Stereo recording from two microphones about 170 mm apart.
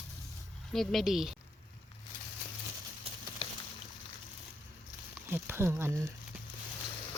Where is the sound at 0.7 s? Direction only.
Centre (ahead or behind).